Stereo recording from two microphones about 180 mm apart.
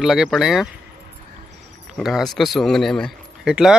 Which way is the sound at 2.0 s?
Centre (ahead or behind).